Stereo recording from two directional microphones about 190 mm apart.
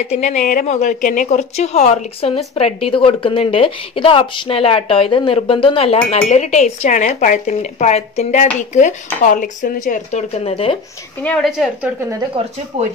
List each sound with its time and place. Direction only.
0.0 s a woman's voice: 35° left (ahead or behind)
11.2 s a woman's voice: centre (ahead or behind)
12.4 s speech: 25° right (ahead or behind)